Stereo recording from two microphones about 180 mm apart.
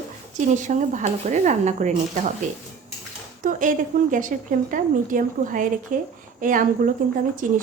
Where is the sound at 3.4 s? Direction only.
45° right (ahead or behind).